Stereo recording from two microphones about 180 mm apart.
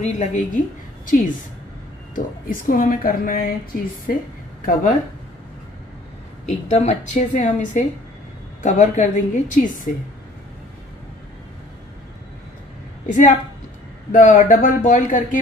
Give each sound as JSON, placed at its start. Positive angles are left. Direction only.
{"t": 0.0, "sound": "a woman's voice", "side_deg": 40}
{"t": 6.7, "sound": "speech", "side_deg": 40}
{"t": 13.0, "sound": "a woman's voice", "side_deg": 45}